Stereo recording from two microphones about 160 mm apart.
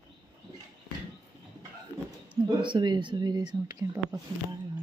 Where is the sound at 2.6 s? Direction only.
30° right (ahead or behind).